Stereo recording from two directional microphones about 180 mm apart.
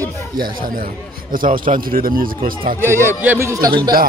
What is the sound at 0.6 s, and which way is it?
Speech, 50° right (ahead or behind).